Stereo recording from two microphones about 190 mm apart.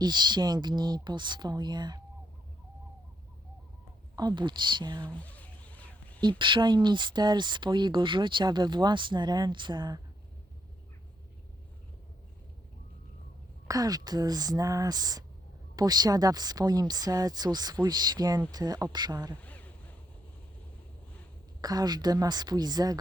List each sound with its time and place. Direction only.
0.0 s speech: 25° right (ahead or behind)
4.1 s speech: 20° right (ahead or behind)
5.0 s a sound: 5° left (ahead or behind)
6.1 s speech: 25° right (ahead or behind)
13.7 s speech: 20° right (ahead or behind)
19.4 s a sound: 10° left (ahead or behind)
21.6 s speech: 20° right (ahead or behind)